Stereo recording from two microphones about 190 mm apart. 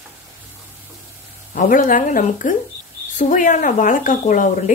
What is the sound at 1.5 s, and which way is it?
Speech, 45° left (ahead or behind).